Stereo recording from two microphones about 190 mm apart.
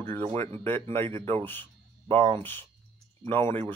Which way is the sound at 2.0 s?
30° right (ahead or behind).